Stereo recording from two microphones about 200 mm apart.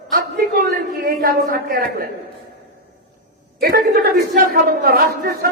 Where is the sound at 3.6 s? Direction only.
50° right (ahead or behind).